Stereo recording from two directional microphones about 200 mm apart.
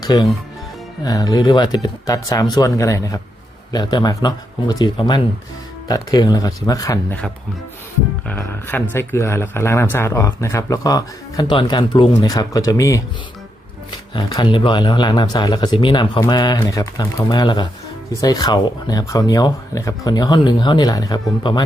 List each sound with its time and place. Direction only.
0.0 s speech: 20° left (ahead or behind)
8.3 s speech: 10° left (ahead or behind)
14.1 s speech: 20° left (ahead or behind)